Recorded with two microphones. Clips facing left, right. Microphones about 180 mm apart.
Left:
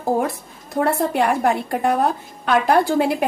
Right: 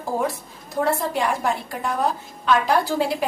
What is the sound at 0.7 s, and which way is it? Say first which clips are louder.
A woman's voice: left 3 dB; 60° left (ahead or behind).